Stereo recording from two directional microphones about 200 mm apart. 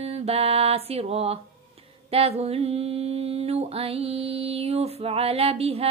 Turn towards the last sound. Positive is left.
turn(degrees=-30)  # may be behind; listen again after turning